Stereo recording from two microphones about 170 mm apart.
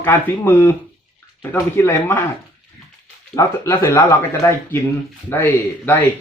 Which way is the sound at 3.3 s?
15° left (ahead or behind).